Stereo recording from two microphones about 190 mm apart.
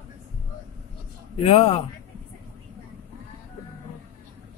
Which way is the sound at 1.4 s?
30° left (ahead or behind).